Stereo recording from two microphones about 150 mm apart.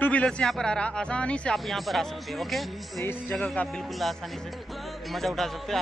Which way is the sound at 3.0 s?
15° left (ahead or behind).